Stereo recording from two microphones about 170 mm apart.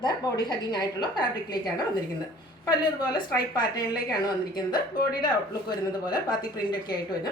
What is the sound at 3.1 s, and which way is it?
Speech, 25° left (ahead or behind).